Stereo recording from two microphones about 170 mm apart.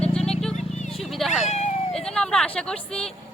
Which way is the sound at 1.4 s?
40° left (ahead or behind).